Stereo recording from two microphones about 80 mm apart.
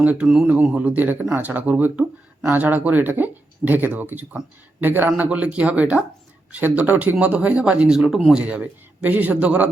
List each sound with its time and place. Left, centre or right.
0.0 s speech: centre